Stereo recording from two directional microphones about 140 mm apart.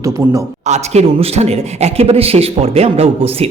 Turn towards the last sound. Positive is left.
turn(degrees=-45)  # may be behind; listen again after turning